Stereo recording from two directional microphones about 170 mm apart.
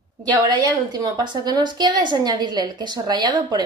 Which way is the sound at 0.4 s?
25° right (ahead or behind).